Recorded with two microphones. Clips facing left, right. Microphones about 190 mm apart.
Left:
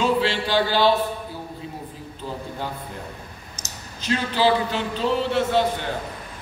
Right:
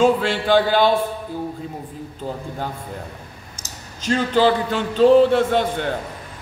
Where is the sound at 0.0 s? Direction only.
50° right (ahead or behind).